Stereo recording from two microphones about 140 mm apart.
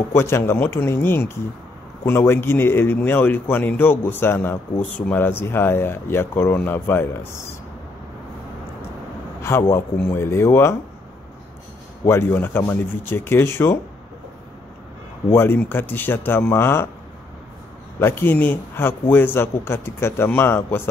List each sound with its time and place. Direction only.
0.1 s speech: 15° left (ahead or behind)
9.4 s a man's voice: 20° left (ahead or behind)
12.0 s speech: 20° left (ahead or behind)
15.3 s speech: 15° left (ahead or behind)
17.9 s speech: 15° left (ahead or behind)